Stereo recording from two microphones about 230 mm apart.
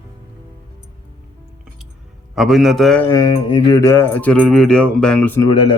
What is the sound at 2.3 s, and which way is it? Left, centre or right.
Speech, centre.